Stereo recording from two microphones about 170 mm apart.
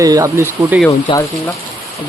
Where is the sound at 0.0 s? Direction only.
20° right (ahead or behind).